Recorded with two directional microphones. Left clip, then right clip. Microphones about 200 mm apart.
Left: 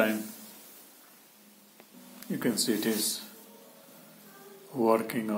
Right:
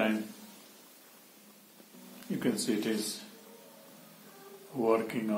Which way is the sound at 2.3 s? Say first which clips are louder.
Left 2 dB; 25° left (ahead or behind).